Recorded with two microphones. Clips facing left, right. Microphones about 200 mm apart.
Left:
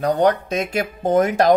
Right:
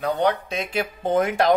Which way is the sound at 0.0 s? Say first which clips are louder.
Left 5 dB; 45° left (ahead or behind).